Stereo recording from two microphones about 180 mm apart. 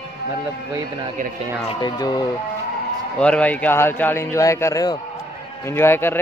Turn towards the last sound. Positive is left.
turn(degrees=15)  # may be behind; listen again after turning